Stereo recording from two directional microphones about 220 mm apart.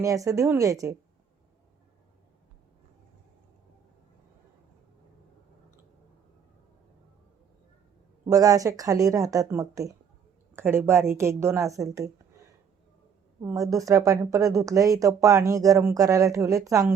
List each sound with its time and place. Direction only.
0.0 s speech: 15° right (ahead or behind)
8.3 s speech: 15° right (ahead or behind)
13.4 s speech: 15° right (ahead or behind)